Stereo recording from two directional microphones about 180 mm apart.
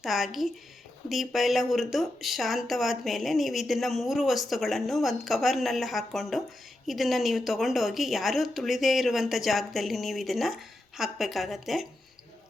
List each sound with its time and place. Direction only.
0.0 s speech: centre (ahead or behind)